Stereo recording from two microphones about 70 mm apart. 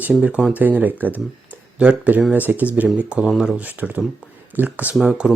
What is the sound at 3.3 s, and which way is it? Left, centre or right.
Speech, centre.